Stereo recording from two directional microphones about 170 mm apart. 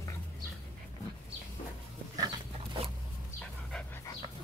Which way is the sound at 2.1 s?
25° right (ahead or behind).